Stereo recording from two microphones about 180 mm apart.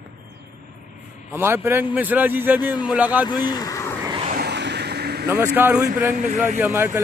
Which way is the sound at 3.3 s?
25° left (ahead or behind).